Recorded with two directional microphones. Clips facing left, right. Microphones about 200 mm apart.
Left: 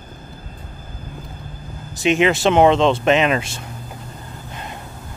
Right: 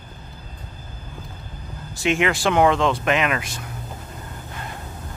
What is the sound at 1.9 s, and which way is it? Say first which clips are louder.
Speech: left 5 dB; 20° left (ahead or behind).